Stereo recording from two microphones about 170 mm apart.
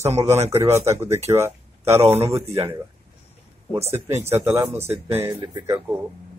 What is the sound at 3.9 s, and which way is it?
Speech, 15° right (ahead or behind).